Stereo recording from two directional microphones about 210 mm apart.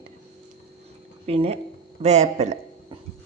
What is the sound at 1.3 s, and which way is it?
A woman's voice, 30° right (ahead or behind).